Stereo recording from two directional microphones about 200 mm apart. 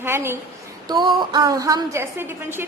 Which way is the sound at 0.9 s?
20° right (ahead or behind).